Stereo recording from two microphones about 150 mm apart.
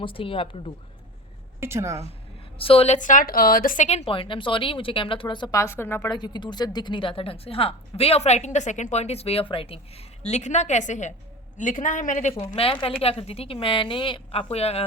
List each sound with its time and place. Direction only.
0.0 s a woman's voice: 35° left (ahead or behind)
1.6 s a woman's voice: 20° right (ahead or behind)
2.6 s a woman's voice: 40° left (ahead or behind); by 3.8 s 70° left (ahead or behind)
3.8 s a woman's voice: 40° left (ahead or behind)
5.5 s a woman's voice: 15° left (ahead or behind)
6.1 s a woman's voice: 30° left (ahead or behind)
10.2 s a woman's voice: 50° left (ahead or behind)
12.5 s a woman's voice: 35° left (ahead or behind)